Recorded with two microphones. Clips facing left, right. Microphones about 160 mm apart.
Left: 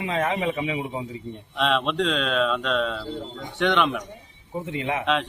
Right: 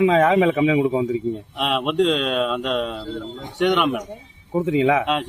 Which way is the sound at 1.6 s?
10° right (ahead or behind).